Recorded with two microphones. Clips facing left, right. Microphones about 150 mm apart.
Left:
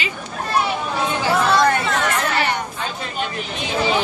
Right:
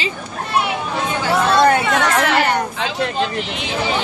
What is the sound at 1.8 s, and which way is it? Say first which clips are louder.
Speech: right 4 dB; 75° right (ahead or behind).